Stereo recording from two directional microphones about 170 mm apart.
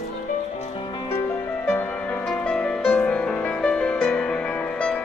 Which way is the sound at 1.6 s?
5° left (ahead or behind).